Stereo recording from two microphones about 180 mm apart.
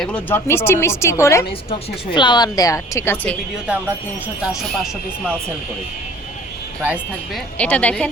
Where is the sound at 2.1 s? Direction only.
25° left (ahead or behind).